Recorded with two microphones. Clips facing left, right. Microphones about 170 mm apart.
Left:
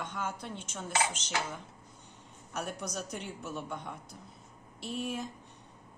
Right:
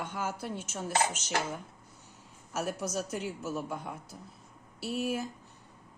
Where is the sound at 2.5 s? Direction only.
5° right (ahead or behind).